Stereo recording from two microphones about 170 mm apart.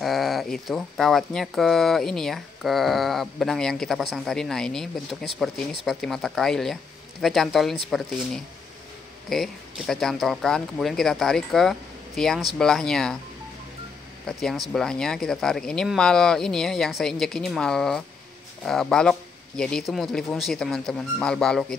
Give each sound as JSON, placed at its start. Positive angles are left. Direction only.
{"t": 0.0, "sound": "speech", "side_deg": 0}
{"t": 9.3, "sound": "speech", "side_deg": 0}
{"t": 14.2, "sound": "speech", "side_deg": 0}